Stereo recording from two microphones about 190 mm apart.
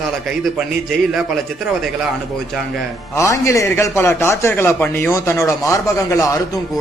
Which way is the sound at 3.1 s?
15° left (ahead or behind).